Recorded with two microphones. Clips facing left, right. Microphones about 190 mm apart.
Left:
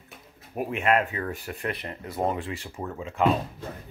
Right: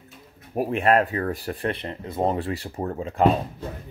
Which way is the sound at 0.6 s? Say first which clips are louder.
Right 4 dB; 35° right (ahead or behind).